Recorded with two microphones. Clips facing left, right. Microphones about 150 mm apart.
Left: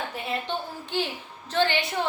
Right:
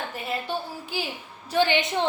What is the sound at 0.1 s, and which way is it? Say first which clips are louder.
A woman's voice: even; centre (ahead or behind).